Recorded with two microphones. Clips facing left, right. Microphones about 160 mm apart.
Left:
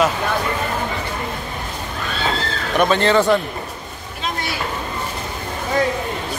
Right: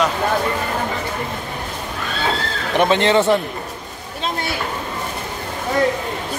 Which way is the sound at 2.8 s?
25° right (ahead or behind).